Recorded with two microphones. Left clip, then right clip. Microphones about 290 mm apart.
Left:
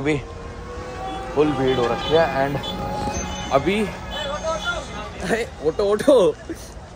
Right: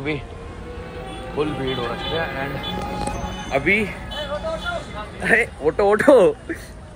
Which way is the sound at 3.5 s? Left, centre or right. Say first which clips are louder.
Right 1 dB; centre.